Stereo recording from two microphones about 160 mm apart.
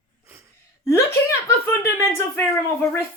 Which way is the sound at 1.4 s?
15° left (ahead or behind).